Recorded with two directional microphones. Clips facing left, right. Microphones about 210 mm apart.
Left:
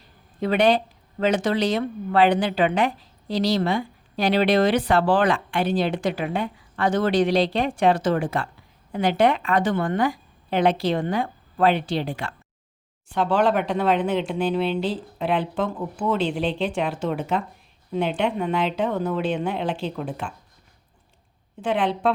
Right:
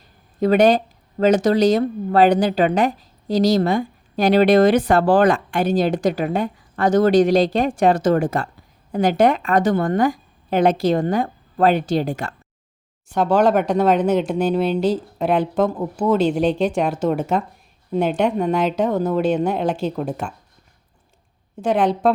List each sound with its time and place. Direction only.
0.3 s a woman's voice: 40° right (ahead or behind)
21.6 s a woman's voice: 40° right (ahead or behind)